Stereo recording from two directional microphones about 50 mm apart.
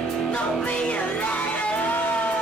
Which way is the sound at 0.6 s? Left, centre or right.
Left.